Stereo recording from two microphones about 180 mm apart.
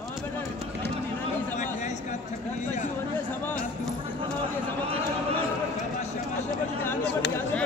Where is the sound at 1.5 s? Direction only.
40° left (ahead or behind).